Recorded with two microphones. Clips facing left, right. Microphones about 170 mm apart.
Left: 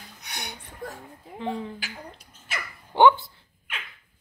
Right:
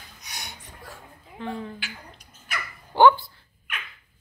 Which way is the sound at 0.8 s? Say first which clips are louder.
Left 9 dB; 50° left (ahead or behind).